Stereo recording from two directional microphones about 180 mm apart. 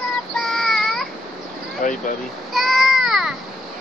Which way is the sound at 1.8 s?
45° left (ahead or behind).